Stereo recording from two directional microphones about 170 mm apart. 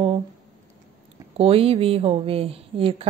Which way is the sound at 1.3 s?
35° right (ahead or behind).